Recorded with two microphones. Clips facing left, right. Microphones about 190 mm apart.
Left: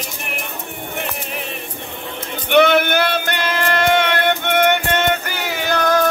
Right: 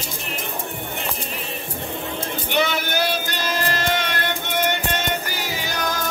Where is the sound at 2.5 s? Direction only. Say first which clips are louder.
Left 10 dB; 60° left (ahead or behind).